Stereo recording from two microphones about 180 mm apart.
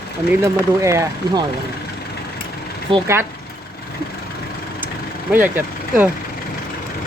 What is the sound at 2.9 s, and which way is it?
Speech, 30° right (ahead or behind).